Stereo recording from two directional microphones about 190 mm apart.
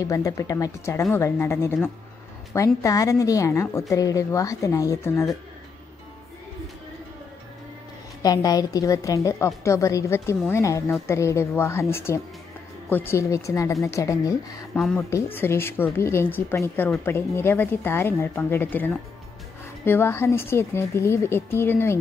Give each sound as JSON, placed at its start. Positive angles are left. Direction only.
{"t": 0.0, "sound": "speech", "side_deg": 15}
{"t": 8.2, "sound": "speech", "side_deg": 20}
{"t": 14.8, "sound": "speech", "side_deg": 0}
{"t": 15.3, "sound": "speech", "side_deg": 10}